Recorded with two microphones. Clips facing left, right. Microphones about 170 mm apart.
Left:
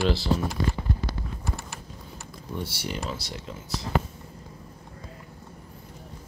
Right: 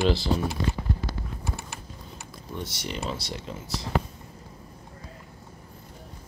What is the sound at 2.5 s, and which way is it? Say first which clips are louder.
Speech: left 2 dB; 10° left (ahead or behind).